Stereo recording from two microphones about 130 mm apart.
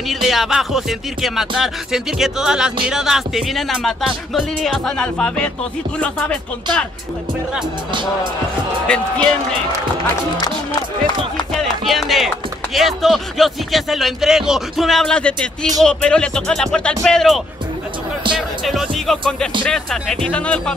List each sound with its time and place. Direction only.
0.1 s music: centre (ahead or behind)
5.9 s speech: 10° left (ahead or behind)
7.9 s speech: 40° right (ahead or behind)
8.8 s speech: 10° left (ahead or behind)
11.6 s a sound: centre (ahead or behind)
12.7 s music: centre (ahead or behind)
18.6 s music: centre (ahead or behind)
19.6 s speech: 5° left (ahead or behind)